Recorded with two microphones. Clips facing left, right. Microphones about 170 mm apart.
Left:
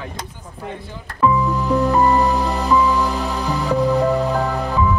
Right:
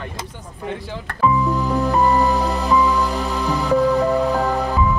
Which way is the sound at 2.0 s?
Centre (ahead or behind).